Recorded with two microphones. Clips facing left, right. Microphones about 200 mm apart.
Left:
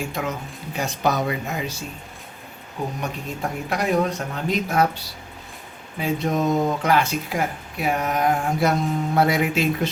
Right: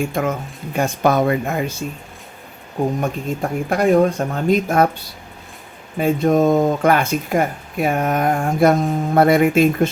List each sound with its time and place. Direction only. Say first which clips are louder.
0.0 s speech: right 7 dB; 50° right (ahead or behind)
2.8 s speech: right 8 dB; 50° right (ahead or behind)
6.0 s speech: right 7 dB; 50° right (ahead or behind)